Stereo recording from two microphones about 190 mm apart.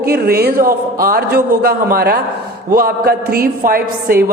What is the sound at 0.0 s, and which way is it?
A woman's voice, 55° right (ahead or behind).